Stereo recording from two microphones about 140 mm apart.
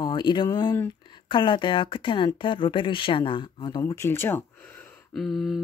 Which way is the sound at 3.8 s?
20° left (ahead or behind).